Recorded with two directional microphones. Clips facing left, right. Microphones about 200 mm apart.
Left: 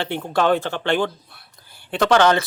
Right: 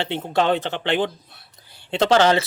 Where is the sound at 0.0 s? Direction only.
20° right (ahead or behind).